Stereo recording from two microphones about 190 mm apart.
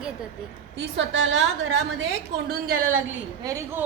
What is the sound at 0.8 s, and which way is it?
A woman's voice, 75° right (ahead or behind).